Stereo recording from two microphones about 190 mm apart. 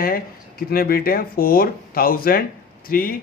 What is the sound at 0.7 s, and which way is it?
Speech, 50° left (ahead or behind).